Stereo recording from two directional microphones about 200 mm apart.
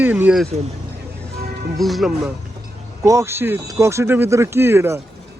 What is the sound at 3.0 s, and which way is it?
Speech, 15° right (ahead or behind).